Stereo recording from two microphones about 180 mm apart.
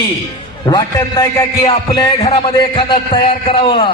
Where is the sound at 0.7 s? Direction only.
20° left (ahead or behind).